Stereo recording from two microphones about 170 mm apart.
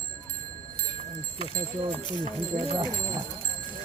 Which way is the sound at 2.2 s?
30° right (ahead or behind).